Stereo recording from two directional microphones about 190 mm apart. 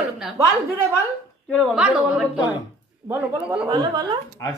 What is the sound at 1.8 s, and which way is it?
A woman's voice, 5° right (ahead or behind).